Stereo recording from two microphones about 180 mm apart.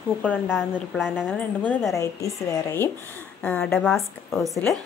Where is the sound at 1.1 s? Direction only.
10° left (ahead or behind).